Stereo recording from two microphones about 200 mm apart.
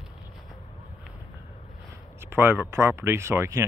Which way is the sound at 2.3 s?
10° right (ahead or behind).